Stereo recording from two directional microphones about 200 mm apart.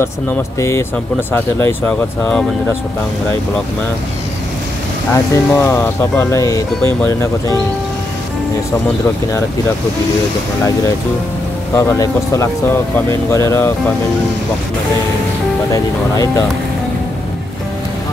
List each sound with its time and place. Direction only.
0.6 s speech: 15° left (ahead or behind)
5.1 s speech: 15° left (ahead or behind)
11.7 s speech: 15° left (ahead or behind)
15.7 s speech: 15° left (ahead or behind)